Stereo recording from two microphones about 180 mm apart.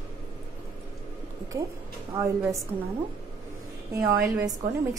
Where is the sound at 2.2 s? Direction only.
15° right (ahead or behind).